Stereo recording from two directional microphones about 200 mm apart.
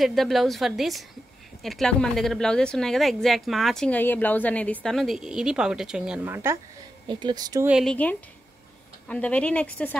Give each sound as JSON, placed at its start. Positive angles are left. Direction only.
{"t": 0.0, "sound": "speech", "side_deg": 0}
{"t": 7.1, "sound": "speech", "side_deg": -20}
{"t": 7.6, "sound": "speech", "side_deg": 0}